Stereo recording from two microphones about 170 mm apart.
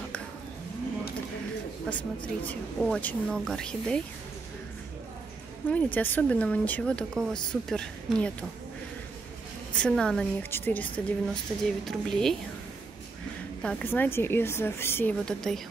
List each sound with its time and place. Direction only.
1.9 s speech: 5° left (ahead or behind)
5.7 s speech: 10° left (ahead or behind)
9.8 s speech: 5° left (ahead or behind)
13.6 s speech: 5° left (ahead or behind)